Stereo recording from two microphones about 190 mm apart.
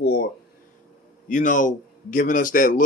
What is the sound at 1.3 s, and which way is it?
A man's voice, 45° left (ahead or behind).